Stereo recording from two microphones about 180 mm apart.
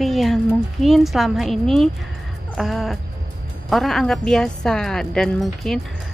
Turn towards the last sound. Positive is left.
turn(degrees=0)  # may be behind; listen again after turning